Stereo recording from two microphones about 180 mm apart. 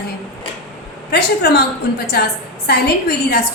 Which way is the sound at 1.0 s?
65° left (ahead or behind).